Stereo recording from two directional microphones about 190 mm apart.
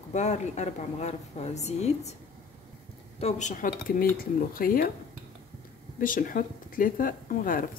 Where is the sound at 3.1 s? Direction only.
35° left (ahead or behind).